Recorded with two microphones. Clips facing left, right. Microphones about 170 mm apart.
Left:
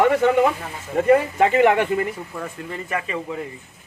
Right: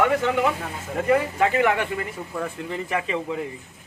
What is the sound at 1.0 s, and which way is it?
Speech, 25° left (ahead or behind).